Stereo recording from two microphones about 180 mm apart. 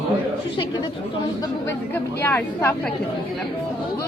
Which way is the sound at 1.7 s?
10° left (ahead or behind).